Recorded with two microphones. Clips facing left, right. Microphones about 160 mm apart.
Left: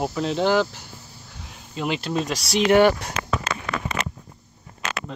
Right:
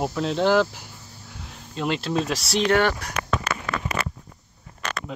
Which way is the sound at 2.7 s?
15° left (ahead or behind).